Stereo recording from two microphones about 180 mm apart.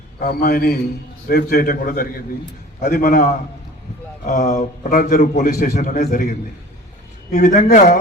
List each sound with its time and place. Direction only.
0.2 s a man's voice: 55° left (ahead or behind)